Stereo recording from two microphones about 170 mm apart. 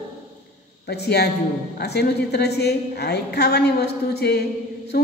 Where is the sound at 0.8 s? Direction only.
70° left (ahead or behind).